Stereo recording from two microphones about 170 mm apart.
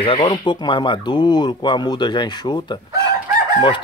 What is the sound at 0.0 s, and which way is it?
Speech, 35° left (ahead or behind).